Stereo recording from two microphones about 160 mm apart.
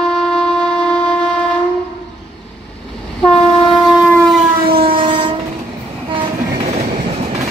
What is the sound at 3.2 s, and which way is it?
Train, 5° left (ahead or behind).